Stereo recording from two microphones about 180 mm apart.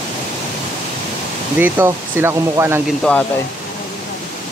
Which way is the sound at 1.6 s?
10° right (ahead or behind).